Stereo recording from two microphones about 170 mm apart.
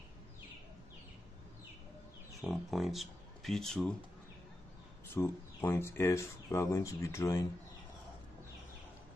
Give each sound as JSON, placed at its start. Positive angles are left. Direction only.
{"t": 2.3, "sound": "speech", "side_deg": 0}
{"t": 5.0, "sound": "speech", "side_deg": 15}